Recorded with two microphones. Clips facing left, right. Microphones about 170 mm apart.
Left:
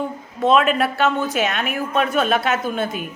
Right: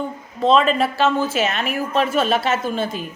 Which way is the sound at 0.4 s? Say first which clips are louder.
Even; 5° left (ahead or behind).